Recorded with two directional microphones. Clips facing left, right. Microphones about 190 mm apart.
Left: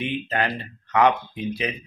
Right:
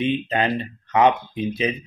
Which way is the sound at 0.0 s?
20° right (ahead or behind).